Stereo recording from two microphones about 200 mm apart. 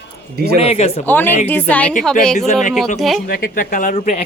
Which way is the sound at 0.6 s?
30° left (ahead or behind).